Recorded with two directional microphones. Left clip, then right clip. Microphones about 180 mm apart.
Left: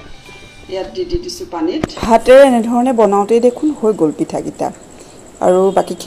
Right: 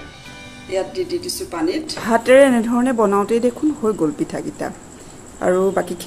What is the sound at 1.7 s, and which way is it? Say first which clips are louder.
A woman's voice: left 7 dB; 20° left (ahead or behind).